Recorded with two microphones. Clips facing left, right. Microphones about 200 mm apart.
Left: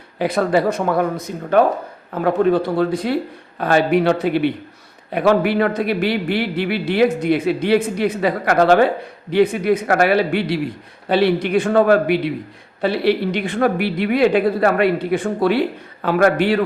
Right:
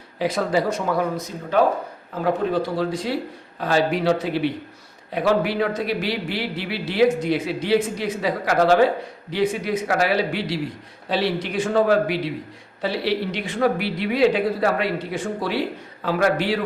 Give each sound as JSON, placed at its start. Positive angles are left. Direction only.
{"t": 0.2, "sound": "speech", "side_deg": 60}